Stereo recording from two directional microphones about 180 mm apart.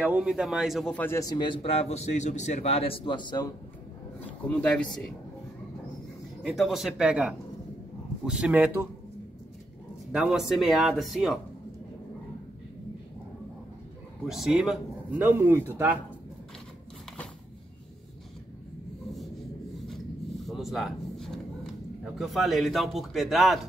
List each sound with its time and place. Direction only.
0.0 s speech: 5° right (ahead or behind); by 3.4 s 25° left (ahead or behind)
4.5 s speech: 5° left (ahead or behind)
6.4 s a man's voice: centre (ahead or behind)
10.1 s speech: 5° right (ahead or behind)
14.2 s a man's voice: centre (ahead or behind)
20.4 s a sound: centre (ahead or behind)
22.2 s speech: centre (ahead or behind)